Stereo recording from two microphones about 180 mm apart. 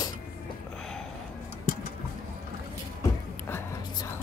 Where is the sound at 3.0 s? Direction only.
15° left (ahead or behind).